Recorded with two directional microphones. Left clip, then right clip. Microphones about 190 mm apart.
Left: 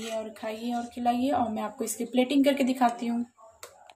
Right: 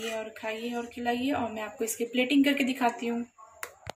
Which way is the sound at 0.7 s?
55° left (ahead or behind).